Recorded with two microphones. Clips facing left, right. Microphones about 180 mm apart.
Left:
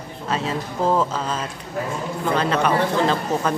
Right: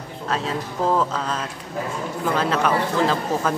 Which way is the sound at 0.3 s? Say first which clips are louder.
Left 1 dB; centre (ahead or behind).